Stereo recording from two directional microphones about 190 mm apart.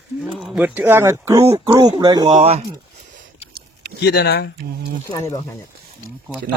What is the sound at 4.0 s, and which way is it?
Speech, 60° left (ahead or behind).